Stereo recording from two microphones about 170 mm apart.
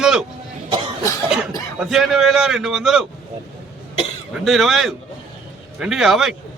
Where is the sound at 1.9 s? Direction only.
Centre (ahead or behind).